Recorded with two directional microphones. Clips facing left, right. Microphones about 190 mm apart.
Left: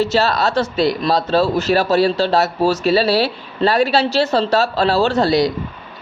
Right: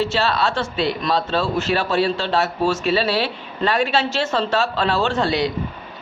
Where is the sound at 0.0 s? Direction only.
40° left (ahead or behind).